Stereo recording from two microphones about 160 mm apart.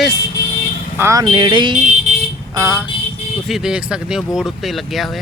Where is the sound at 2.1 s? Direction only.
45° right (ahead or behind).